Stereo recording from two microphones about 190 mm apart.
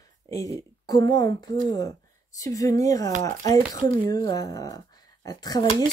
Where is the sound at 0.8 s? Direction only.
20° left (ahead or behind).